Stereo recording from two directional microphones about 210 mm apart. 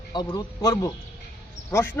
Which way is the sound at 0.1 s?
20° left (ahead or behind).